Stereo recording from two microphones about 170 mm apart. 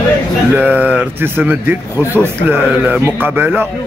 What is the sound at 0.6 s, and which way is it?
A man's voice, 10° right (ahead or behind).